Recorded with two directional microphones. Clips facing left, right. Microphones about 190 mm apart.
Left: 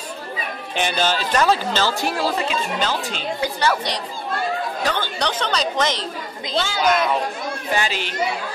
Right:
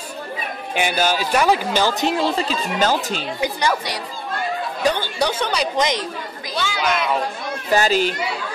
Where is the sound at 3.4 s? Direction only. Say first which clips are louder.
Even; 10° right (ahead or behind).